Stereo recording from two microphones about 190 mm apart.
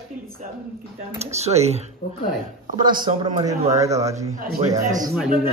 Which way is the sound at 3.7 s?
15° right (ahead or behind).